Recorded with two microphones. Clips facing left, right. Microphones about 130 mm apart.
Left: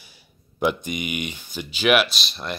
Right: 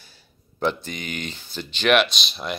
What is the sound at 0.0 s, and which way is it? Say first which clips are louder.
Speech: left 1 dB; 10° left (ahead or behind).